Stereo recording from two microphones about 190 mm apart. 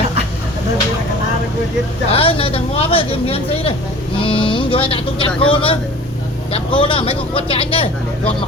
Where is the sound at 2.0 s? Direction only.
30° left (ahead or behind).